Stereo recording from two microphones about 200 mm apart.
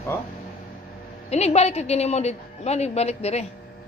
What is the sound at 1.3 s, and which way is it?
A woman's voice, 35° left (ahead or behind).